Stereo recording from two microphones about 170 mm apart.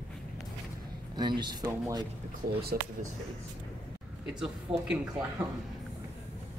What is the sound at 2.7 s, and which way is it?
Speech, 60° right (ahead or behind).